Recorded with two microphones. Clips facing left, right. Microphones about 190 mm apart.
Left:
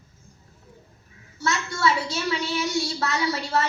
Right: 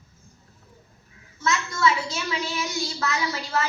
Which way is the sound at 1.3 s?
35° left (ahead or behind).